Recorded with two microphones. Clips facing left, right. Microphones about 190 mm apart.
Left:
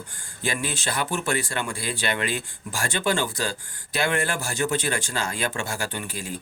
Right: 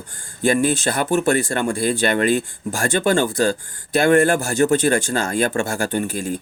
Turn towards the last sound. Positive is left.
turn(degrees=-50)  # may be behind; listen again after turning